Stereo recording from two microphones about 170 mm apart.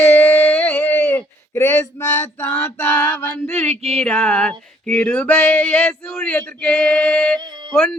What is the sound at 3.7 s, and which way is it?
Music, 35° right (ahead or behind).